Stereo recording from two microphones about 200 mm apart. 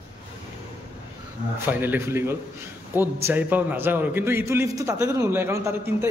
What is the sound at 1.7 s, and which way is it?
A man's voice, 10° right (ahead or behind).